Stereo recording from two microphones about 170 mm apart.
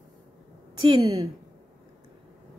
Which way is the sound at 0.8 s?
25° right (ahead or behind).